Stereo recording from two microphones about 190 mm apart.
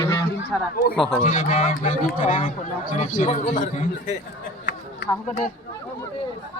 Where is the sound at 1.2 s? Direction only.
40° left (ahead or behind).